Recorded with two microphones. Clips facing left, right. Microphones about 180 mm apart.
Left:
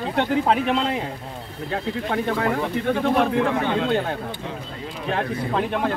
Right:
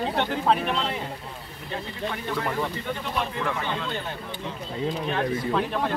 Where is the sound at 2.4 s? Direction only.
75° left (ahead or behind); by 4.1 s 60° left (ahead or behind).